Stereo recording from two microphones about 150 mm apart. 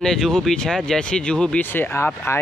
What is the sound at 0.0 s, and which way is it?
Speech, 5° left (ahead or behind).